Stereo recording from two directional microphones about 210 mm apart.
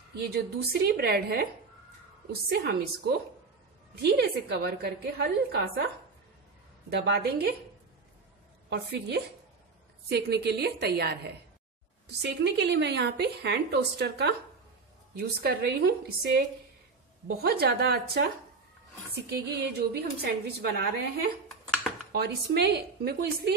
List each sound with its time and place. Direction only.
0.1 s a woman's voice: 50° right (ahead or behind)
2.5 s a woman's voice: 50° right (ahead or behind)
6.9 s a woman's voice: 50° right (ahead or behind)
8.6 s a woman's voice: 50° right (ahead or behind)
17.3 s a woman's voice: 45° right (ahead or behind)
19.2 s a woman's voice: 50° right (ahead or behind)